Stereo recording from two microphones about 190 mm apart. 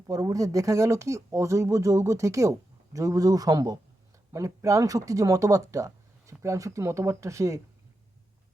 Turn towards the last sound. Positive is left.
turn(degrees=-15)  # may be behind; listen again after turning